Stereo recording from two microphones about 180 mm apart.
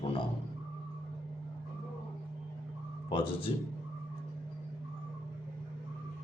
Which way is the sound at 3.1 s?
30° left (ahead or behind).